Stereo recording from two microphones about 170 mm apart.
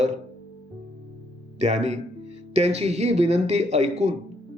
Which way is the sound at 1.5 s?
40° right (ahead or behind).